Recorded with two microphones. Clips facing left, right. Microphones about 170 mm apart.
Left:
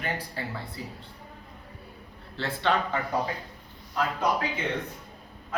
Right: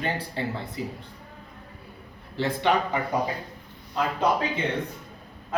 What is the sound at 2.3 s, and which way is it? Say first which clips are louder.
Speech: right 3 dB; 15° right (ahead or behind).